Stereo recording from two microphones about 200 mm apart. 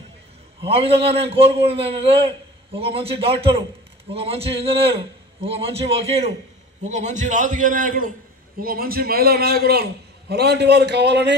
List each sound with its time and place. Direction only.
0.7 s a man's voice: 30° right (ahead or behind); by 11.3 s 60° right (ahead or behind)